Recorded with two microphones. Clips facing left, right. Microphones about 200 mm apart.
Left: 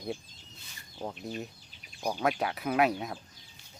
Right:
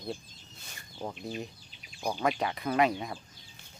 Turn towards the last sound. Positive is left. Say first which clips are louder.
# even
turn(degrees=5)  # may be behind; listen again after turning